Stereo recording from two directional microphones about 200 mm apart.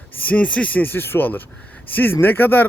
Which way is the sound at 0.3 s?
5° left (ahead or behind).